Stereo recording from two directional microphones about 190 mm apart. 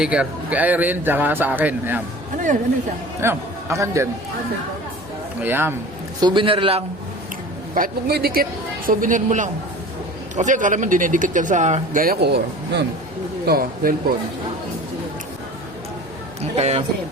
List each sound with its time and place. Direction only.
0.0 s speech: 5° right (ahead or behind)
3.2 s a man's voice: 15° right (ahead or behind)
5.4 s speech: 10° right (ahead or behind)
6.1 s a man's voice: 25° right (ahead or behind)
7.8 s speech: 55° right (ahead or behind)
16.6 s speech: 35° right (ahead or behind)